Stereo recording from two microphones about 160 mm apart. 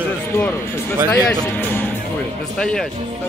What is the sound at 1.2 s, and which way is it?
Speech, 10° left (ahead or behind).